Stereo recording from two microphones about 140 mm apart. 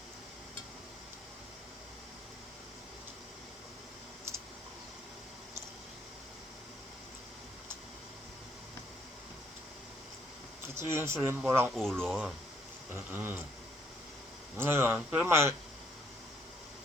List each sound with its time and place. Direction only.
10.8 s speech: 20° right (ahead or behind)
11.7 s speech: 5° left (ahead or behind)
12.9 s speech: 15° right (ahead or behind)
14.5 s speech: 15° right (ahead or behind)